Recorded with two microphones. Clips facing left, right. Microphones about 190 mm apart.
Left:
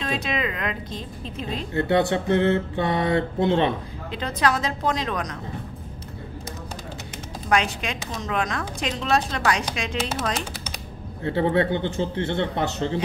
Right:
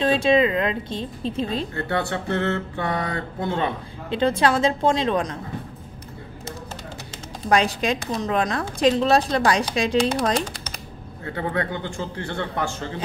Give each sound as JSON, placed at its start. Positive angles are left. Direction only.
{"t": 0.0, "sound": "a woman's voice", "side_deg": -30}
{"t": 1.7, "sound": "mantra", "side_deg": 20}
{"t": 4.1, "sound": "a woman's voice", "side_deg": -30}
{"t": 7.4, "sound": "speech", "side_deg": -35}
{"t": 11.2, "sound": "mantra", "side_deg": 25}